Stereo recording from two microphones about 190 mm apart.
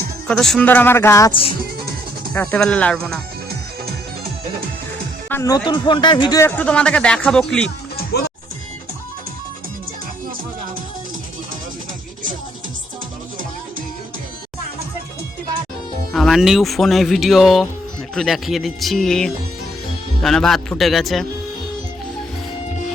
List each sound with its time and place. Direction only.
0.3 s speech: centre (ahead or behind)
5.3 s speech: 15° left (ahead or behind)
6.6 s speech: 5° left (ahead or behind)
7.9 s music: 55° left (ahead or behind)
16.1 s speech: centre (ahead or behind)